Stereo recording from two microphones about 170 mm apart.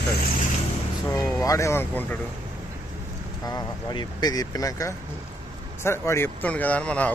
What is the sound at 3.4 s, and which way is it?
Speech, 25° left (ahead or behind).